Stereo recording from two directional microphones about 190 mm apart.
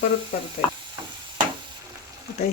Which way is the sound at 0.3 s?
45° left (ahead or behind).